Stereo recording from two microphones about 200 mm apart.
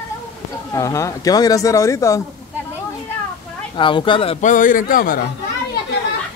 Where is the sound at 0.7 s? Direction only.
15° left (ahead or behind).